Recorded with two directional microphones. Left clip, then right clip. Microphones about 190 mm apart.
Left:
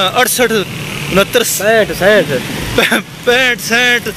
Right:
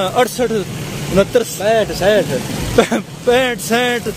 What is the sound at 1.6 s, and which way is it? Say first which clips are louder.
Speech: left 5 dB; 40° left (ahead or behind).